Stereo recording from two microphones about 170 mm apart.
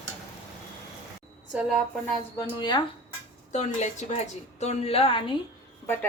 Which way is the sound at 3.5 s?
45° left (ahead or behind).